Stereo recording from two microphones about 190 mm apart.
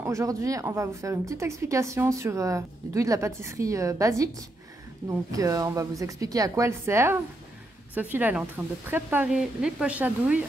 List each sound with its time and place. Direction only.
0.0 s speech: 15° right (ahead or behind)